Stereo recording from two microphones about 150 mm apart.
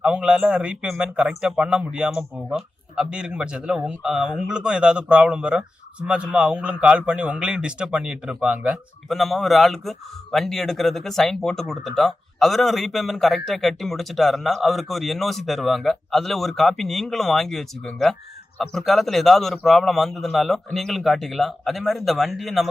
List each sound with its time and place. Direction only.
0.0 s a man's voice: 5° right (ahead or behind)